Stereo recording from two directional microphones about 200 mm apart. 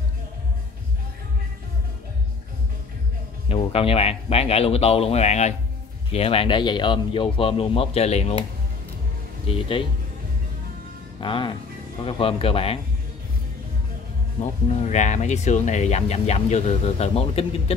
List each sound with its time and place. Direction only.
3.4 s speech: 30° left (ahead or behind)
9.5 s speech: 25° left (ahead or behind)
11.1 s speech: 25° left (ahead or behind)
14.7 s speech: 35° left (ahead or behind)